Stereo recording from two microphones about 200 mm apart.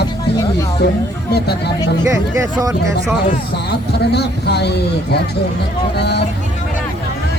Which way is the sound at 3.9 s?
55° left (ahead or behind).